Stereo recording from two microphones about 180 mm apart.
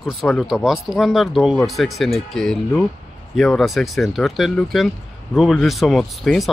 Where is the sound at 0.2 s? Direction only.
Centre (ahead or behind).